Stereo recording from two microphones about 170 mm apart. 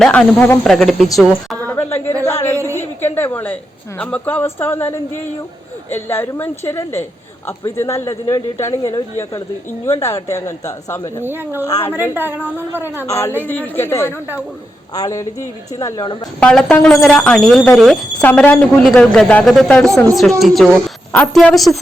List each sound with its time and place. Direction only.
0.0 s speech: 5° left (ahead or behind)
1.6 s a sound: 10° left (ahead or behind)
2.7 s a woman's voice: 10° left (ahead or behind)
11.2 s a woman's voice: 15° right (ahead or behind)
11.6 s speech: 15° left (ahead or behind)
12.1 s a woman's voice: 10° right (ahead or behind)
13.1 s a man's voice: 15° left (ahead or behind)
16.4 s speech: 5° left (ahead or behind)